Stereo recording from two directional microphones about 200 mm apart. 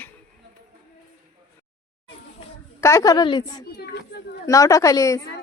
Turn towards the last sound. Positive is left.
turn(degrees=15)  # may be behind; listen again after turning